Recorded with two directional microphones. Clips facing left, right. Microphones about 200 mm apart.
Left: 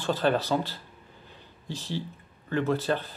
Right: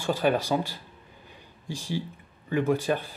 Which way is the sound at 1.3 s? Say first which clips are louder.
Right 1 dB; 10° right (ahead or behind).